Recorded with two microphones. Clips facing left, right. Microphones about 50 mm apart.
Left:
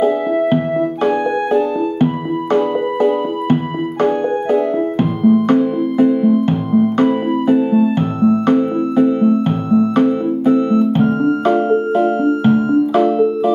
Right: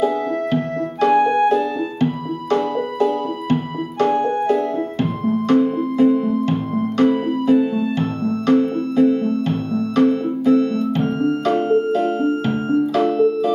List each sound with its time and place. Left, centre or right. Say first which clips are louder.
2.5 s music: left 4 dB; left